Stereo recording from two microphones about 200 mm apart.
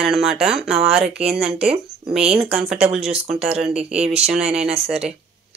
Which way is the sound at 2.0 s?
30° right (ahead or behind).